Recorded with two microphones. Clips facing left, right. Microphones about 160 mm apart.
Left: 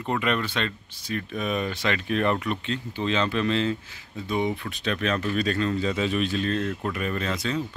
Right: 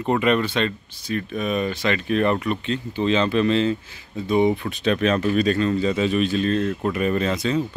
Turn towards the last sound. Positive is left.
turn(degrees=-15)  # may be behind; listen again after turning